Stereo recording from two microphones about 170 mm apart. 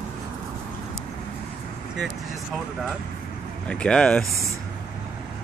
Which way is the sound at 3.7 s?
5° left (ahead or behind).